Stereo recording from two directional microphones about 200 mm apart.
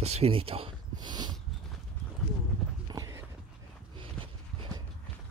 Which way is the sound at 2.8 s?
15° right (ahead or behind).